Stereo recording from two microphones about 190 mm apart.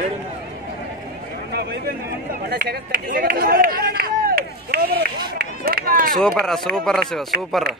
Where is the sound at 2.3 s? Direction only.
55° right (ahead or behind).